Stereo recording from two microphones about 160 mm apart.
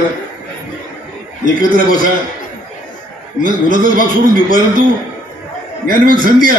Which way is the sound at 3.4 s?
60° right (ahead or behind).